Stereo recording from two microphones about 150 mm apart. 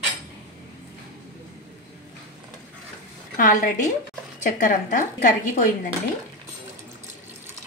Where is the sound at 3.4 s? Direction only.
60° left (ahead or behind).